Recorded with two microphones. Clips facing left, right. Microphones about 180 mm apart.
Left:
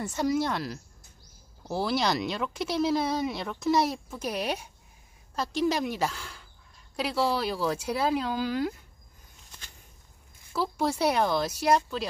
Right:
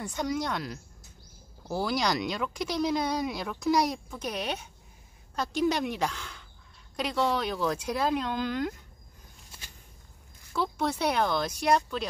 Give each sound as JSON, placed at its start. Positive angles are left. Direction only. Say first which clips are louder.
{"t": 0.0, "sound": "speech", "louder": "left 4 dB", "side_deg": 5}
{"t": 10.5, "sound": "speech", "louder": "left 1 dB", "side_deg": 5}